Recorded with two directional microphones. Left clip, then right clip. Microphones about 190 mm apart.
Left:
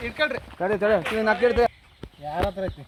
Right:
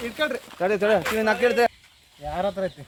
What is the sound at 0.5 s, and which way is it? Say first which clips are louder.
Speech: right 1 dB; 45° left (ahead or behind).